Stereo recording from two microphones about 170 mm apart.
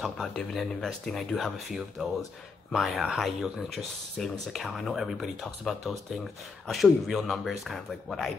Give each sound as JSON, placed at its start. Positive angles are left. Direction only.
{"t": 0.0, "sound": "speech", "side_deg": 0}